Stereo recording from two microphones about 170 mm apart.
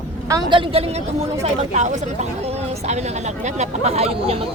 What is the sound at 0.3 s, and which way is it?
Speech, 25° right (ahead or behind).